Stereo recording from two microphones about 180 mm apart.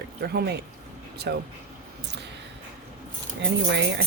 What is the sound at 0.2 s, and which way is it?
Speech, 65° right (ahead or behind).